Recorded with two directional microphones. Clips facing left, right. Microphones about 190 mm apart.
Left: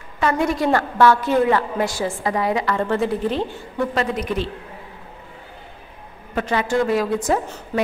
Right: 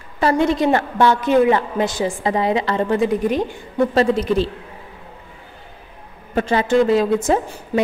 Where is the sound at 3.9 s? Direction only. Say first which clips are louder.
Right 8 dB; 30° right (ahead or behind).